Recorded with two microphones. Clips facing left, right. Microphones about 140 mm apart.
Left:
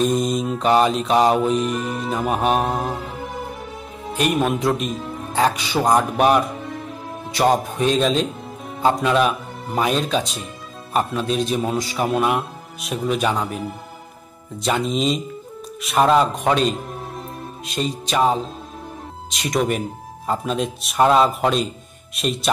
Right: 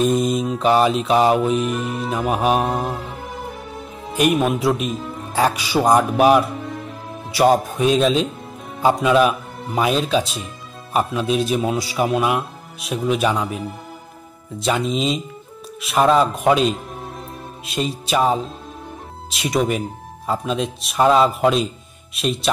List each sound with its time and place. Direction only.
0.0 s mantra: centre (ahead or behind)
1.0 s music: centre (ahead or behind)
4.2 s a man's voice: 5° right (ahead or behind)